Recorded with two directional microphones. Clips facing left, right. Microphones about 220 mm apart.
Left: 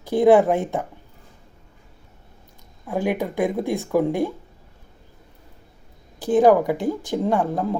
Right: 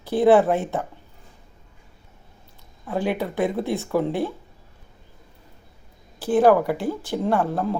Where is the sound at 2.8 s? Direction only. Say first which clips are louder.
Left 1 dB; 10° left (ahead or behind).